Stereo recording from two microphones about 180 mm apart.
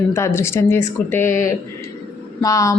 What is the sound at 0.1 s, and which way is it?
Speech, 15° left (ahead or behind).